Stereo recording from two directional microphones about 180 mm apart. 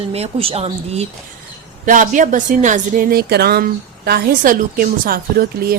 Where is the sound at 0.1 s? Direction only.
35° right (ahead or behind).